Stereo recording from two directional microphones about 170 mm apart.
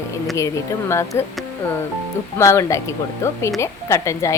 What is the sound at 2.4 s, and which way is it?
Speech, 20° left (ahead or behind).